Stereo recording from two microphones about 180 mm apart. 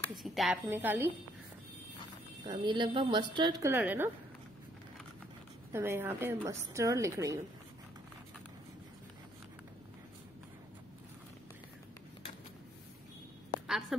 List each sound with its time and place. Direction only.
0.2 s speech: centre (ahead or behind)
0.7 s a woman's voice: 10° right (ahead or behind)
2.4 s a woman's voice: 25° right (ahead or behind)
3.6 s a woman's voice: 10° right (ahead or behind)
5.7 s a woman's voice: 15° right (ahead or behind)
13.7 s a sound: centre (ahead or behind)